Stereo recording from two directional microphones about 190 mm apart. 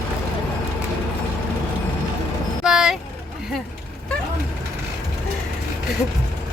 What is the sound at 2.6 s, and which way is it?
Vehicle, 5° right (ahead or behind).